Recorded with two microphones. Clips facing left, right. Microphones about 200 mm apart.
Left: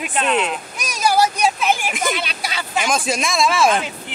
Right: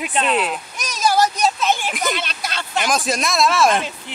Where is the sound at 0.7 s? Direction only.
10° left (ahead or behind).